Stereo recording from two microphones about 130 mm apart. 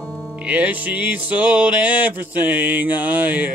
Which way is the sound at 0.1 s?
15° left (ahead or behind).